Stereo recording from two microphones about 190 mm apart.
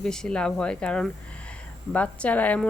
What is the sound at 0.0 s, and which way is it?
A woman's voice, 5° left (ahead or behind).